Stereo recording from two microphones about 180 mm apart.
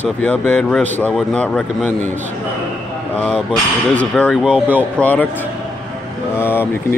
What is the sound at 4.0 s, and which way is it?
Speech, 10° left (ahead or behind).